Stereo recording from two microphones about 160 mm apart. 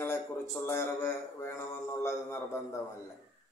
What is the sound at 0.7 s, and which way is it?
Speech, 15° left (ahead or behind).